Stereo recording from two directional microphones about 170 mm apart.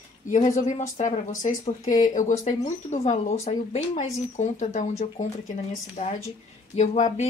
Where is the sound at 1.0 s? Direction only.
35° left (ahead or behind).